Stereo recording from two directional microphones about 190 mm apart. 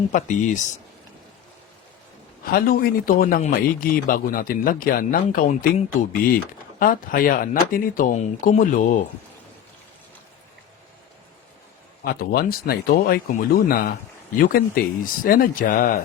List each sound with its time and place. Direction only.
0.1 s speech: 40° left (ahead or behind)
2.4 s a man's voice: 50° left (ahead or behind)
12.0 s a man's voice: 55° left (ahead or behind)